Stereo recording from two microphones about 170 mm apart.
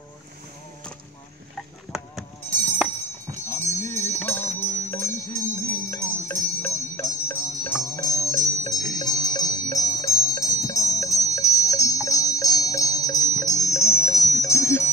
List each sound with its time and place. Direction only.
1.9 s livestock: 15° left (ahead or behind)
3.4 s music: 15° left (ahead or behind)